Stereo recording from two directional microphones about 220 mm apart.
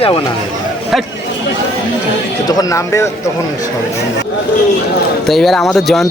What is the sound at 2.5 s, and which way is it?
Speech, 15° left (ahead or behind).